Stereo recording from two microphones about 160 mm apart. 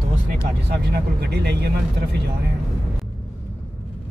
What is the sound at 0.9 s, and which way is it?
Speech, 90° right.